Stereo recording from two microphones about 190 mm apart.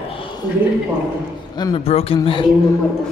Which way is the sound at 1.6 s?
25° left (ahead or behind).